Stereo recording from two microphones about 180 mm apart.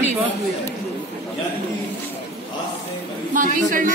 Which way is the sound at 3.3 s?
45° right (ahead or behind).